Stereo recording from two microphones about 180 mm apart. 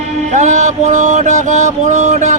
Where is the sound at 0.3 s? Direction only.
40° right (ahead or behind).